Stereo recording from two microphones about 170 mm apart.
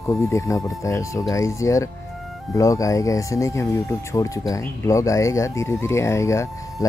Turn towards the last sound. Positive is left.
turn(degrees=15)  # may be behind; listen again after turning